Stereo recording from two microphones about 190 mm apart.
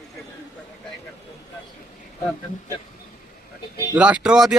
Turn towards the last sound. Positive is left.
turn(degrees=-5)  # may be behind; listen again after turning